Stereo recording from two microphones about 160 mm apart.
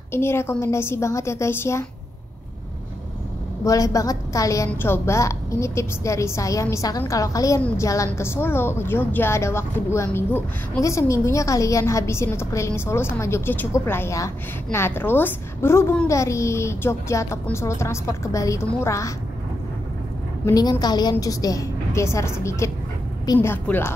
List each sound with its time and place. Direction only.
0.1 s a woman's voice: 15° left (ahead or behind)
3.6 s a woman's voice: 20° left (ahead or behind)
20.4 s a woman's voice: 20° left (ahead or behind)
23.5 s a woman's voice: 15° left (ahead or behind)